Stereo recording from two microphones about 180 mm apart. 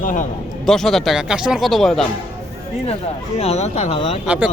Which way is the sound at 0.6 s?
Centre (ahead or behind).